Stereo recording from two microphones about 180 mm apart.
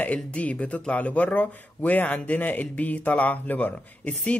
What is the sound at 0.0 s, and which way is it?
Speech, 10° left (ahead or behind).